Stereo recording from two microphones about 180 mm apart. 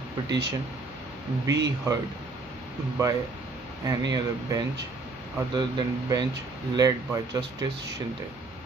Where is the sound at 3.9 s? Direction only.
20° right (ahead or behind).